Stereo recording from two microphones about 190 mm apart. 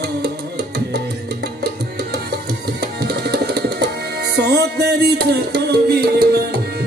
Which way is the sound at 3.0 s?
60° right (ahead or behind).